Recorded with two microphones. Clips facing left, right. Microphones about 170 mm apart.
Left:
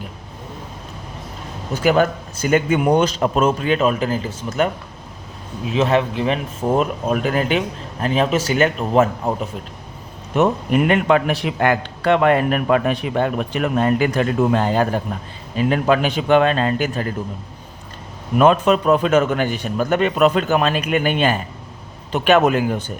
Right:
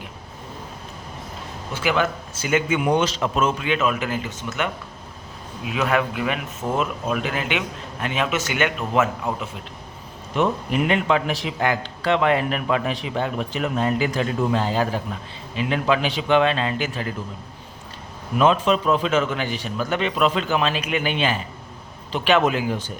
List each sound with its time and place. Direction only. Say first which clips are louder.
1.7 s speech: left 6 dB; 40° left (ahead or behind)
10.3 s a man's voice: left 5 dB; 50° left (ahead or behind)
18.3 s a man's voice: left 4 dB; 50° left (ahead or behind)